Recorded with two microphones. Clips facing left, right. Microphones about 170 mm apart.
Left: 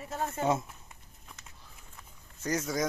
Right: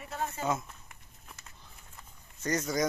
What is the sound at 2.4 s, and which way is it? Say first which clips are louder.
Speech: right 1 dB; 5° left (ahead or behind).